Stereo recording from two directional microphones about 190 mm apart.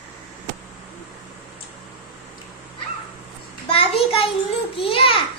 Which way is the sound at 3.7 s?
30° left (ahead or behind).